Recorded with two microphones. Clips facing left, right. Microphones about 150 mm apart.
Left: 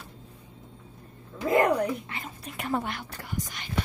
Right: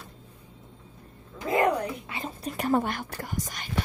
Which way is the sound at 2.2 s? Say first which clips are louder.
Right 9 dB; 35° right (ahead or behind).